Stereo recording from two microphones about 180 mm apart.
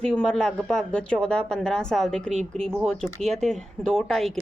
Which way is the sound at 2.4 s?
35° right (ahead or behind).